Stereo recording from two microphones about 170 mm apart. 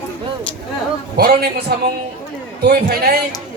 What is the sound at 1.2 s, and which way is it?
A man's voice, 65° right (ahead or behind).